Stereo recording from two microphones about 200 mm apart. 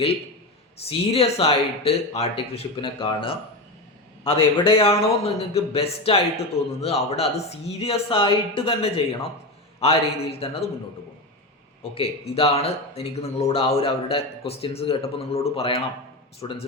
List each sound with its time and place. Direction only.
0.9 s a man's voice: 30° left (ahead or behind)
11.8 s a man's voice: 30° left (ahead or behind)